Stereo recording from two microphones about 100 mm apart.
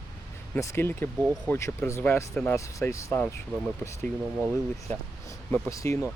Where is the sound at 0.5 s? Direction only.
30° left (ahead or behind).